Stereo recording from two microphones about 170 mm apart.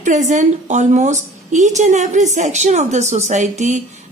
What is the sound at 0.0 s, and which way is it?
A woman's voice, 45° right (ahead or behind).